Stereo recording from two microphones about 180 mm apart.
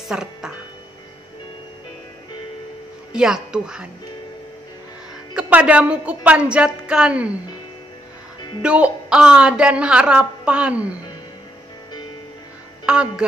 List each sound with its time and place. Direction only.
0.1 s music: 5° right (ahead or behind)
3.1 s a woman's voice: 5° right (ahead or behind)
5.3 s a woman's voice: 5° right (ahead or behind)
8.4 s music: 25° left (ahead or behind)
8.6 s a woman's voice: 5° right (ahead or behind)
12.8 s speech: 5° right (ahead or behind)